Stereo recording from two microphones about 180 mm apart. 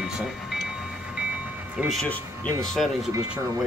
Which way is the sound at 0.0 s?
Centre (ahead or behind).